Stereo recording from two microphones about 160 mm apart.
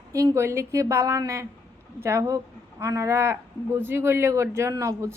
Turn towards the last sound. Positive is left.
turn(degrees=-20)  # may be behind; listen again after turning